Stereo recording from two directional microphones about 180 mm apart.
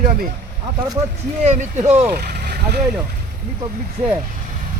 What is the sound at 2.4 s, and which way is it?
Vehicle, 60° right (ahead or behind).